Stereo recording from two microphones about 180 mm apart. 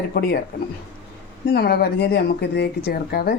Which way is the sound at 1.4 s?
60° left (ahead or behind).